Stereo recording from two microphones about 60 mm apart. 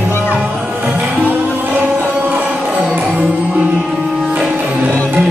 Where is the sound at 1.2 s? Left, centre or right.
Right.